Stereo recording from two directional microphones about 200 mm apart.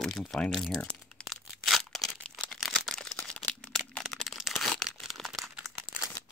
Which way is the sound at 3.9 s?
5° left (ahead or behind).